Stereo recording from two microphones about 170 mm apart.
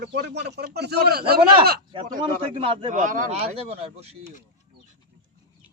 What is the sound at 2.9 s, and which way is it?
Speech, 50° right (ahead or behind).